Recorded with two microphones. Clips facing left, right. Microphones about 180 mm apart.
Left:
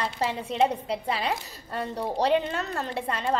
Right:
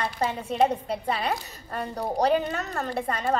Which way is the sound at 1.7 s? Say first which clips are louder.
Even; 30° left (ahead or behind).